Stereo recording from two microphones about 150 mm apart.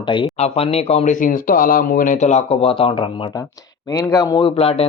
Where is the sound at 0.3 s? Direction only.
45° left (ahead or behind).